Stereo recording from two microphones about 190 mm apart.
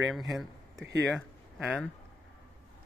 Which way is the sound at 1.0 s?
Centre (ahead or behind).